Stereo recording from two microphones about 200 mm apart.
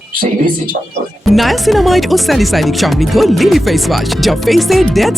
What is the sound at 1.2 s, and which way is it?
Speech, centre (ahead or behind).